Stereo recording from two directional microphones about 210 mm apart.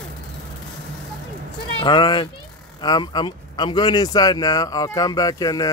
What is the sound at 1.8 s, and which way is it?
Speech, 25° left (ahead or behind).